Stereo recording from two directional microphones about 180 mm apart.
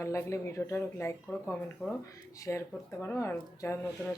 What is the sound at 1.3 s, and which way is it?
Speech, 5° left (ahead or behind).